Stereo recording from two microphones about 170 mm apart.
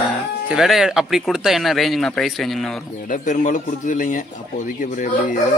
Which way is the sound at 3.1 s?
50° left (ahead or behind).